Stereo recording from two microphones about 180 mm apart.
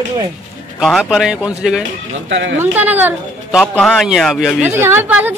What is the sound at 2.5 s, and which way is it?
Speech, 10° right (ahead or behind).